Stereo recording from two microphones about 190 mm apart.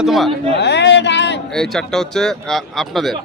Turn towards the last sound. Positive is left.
turn(degrees=0)  # may be behind; listen again after turning